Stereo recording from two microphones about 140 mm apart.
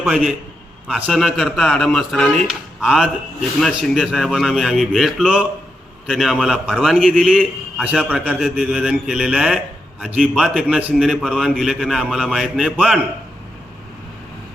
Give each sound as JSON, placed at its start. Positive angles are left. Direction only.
{"t": 0.1, "sound": "a man's voice", "side_deg": -5}